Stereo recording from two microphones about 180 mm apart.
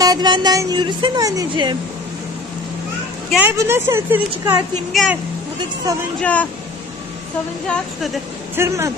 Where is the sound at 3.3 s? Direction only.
10° right (ahead or behind).